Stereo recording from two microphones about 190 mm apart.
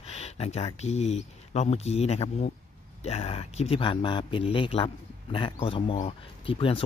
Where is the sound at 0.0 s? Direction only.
35° left (ahead or behind).